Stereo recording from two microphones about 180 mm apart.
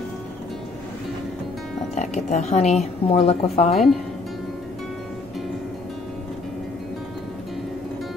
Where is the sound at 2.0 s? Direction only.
40° left (ahead or behind).